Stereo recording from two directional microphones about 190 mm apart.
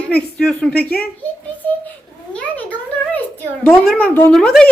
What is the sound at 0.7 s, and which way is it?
Speech, 55° left (ahead or behind).